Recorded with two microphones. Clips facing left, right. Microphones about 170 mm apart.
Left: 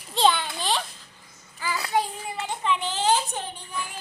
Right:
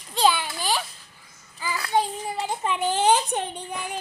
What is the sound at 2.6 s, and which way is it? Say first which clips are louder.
Speech: right 3 dB; 50° right (ahead or behind).